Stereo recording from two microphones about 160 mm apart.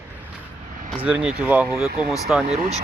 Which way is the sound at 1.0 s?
10° right (ahead or behind).